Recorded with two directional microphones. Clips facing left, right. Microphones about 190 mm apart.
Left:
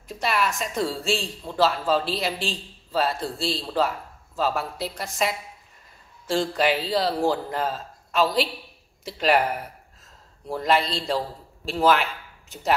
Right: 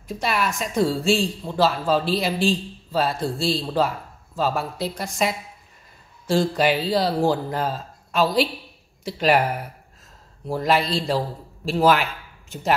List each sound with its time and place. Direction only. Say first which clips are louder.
0.1 s a man's voice: right 1 dB; centre (ahead or behind)
10.5 s a man's voice: right 2 dB; centre (ahead or behind)